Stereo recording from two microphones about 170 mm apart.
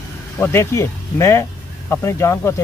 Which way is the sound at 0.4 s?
15° left (ahead or behind).